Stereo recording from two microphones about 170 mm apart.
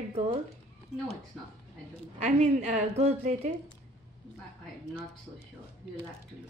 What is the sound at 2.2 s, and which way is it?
A woman's voice, 45° right (ahead or behind).